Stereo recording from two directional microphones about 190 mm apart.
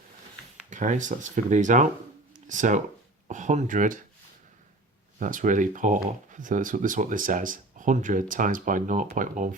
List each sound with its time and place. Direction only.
0.7 s speech: 40° right (ahead or behind)
2.3 s a sound: 40° right (ahead or behind)
3.2 s speech: 40° right (ahead or behind)
5.2 s speech: 45° right (ahead or behind)